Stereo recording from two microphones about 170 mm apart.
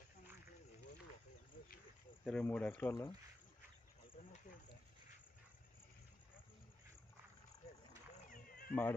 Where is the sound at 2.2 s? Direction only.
5° left (ahead or behind).